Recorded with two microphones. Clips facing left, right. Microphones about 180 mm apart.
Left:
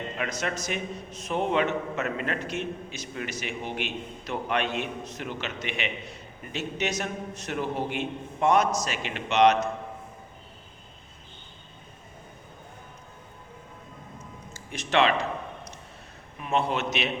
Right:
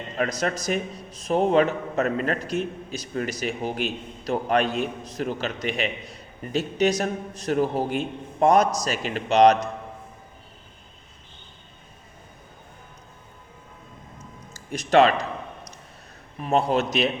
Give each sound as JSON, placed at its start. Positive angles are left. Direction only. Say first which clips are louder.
{"t": 0.2, "sound": "a man's voice", "louder": "right 7 dB", "side_deg": -40}
{"t": 14.7, "sound": "a man's voice", "louder": "right 6 dB", "side_deg": -40}
{"t": 16.4, "sound": "a man's voice", "louder": "right 5 dB", "side_deg": -40}